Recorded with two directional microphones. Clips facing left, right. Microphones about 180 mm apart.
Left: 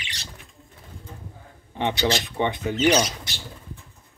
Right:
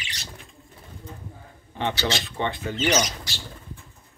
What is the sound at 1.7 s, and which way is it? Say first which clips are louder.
Speech: left 3 dB; 15° left (ahead or behind).